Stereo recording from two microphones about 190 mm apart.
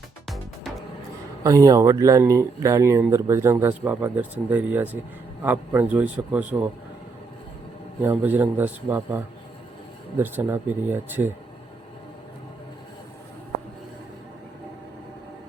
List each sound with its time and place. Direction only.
1.5 s speech: 20° right (ahead or behind)
8.0 s speech: 10° right (ahead or behind)